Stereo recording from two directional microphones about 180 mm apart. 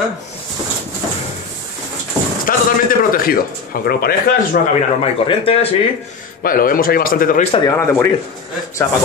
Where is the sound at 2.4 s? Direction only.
50° left (ahead or behind).